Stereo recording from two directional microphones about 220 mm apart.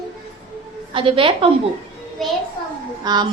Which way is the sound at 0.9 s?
25° right (ahead or behind).